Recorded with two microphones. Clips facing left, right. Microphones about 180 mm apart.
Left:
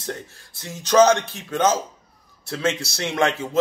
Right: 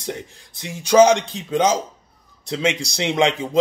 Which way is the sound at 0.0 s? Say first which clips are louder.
Right 2 dB; 15° right (ahead or behind).